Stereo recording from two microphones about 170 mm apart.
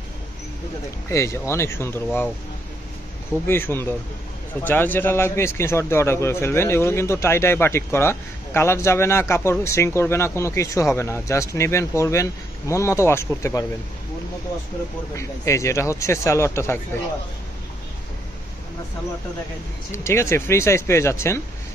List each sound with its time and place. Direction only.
1.0 s a man's voice: 15° left (ahead or behind)
3.4 s a man's voice: 15° left (ahead or behind)
15.1 s a man's voice: 15° left (ahead or behind)
19.9 s a man's voice: 15° left (ahead or behind)